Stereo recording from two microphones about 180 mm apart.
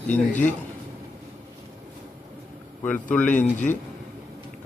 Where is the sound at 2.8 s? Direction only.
5° left (ahead or behind).